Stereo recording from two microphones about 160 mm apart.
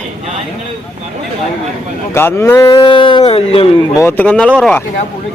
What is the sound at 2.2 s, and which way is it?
Speech, 15° left (ahead or behind).